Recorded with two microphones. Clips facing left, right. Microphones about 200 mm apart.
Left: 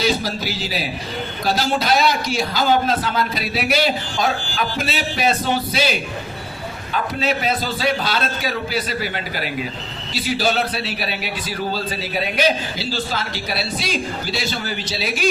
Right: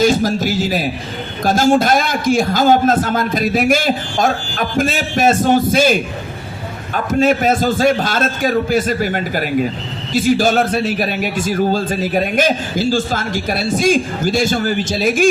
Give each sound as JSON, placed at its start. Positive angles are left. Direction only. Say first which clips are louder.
{"t": 0.0, "sound": "a man's voice", "louder": "right 7 dB", "side_deg": -45}